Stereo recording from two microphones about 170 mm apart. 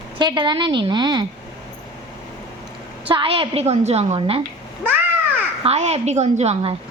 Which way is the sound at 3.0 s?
30° right (ahead or behind).